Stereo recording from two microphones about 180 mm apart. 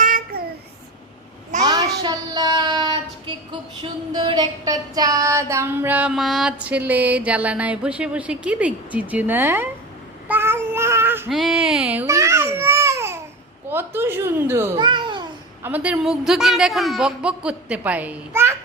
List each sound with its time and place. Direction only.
0.0 s child singing: 55° right (ahead or behind)
1.6 s child singing: 20° right (ahead or behind)
4.1 s female singing: 25° right (ahead or behind)
10.2 s child singing: 10° right (ahead or behind)
11.3 s baby cry: centre (ahead or behind)
13.7 s a woman's voice: 10° right (ahead or behind)
14.8 s babbling: 25° right (ahead or behind)
15.6 s speech: 10° right (ahead or behind)